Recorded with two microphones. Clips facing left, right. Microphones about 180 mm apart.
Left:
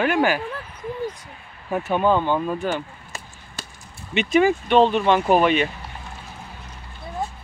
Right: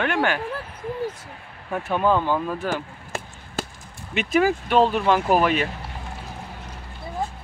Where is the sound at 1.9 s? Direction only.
Centre (ahead or behind).